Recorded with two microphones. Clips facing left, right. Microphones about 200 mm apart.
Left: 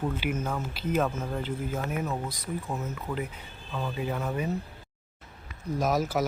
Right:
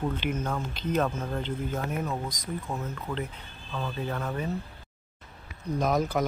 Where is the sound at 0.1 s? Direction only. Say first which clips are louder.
Even; 10° left (ahead or behind).